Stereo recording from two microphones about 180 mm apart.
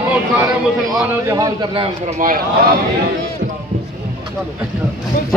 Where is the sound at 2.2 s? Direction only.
50° right (ahead or behind).